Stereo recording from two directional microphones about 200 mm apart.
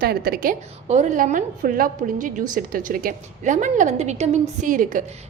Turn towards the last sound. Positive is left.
turn(degrees=-40)  # may be behind; listen again after turning